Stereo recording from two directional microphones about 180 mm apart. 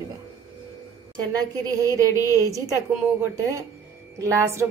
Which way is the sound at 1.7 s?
20° right (ahead or behind).